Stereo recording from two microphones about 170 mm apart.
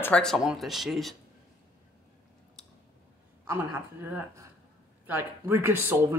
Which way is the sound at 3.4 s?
15° right (ahead or behind).